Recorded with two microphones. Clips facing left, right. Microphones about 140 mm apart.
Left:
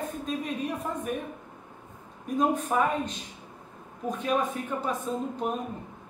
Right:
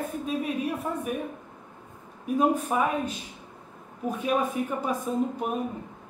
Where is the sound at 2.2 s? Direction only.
10° right (ahead or behind).